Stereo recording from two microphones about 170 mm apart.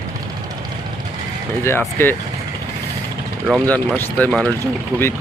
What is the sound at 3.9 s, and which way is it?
Speech, 10° left (ahead or behind).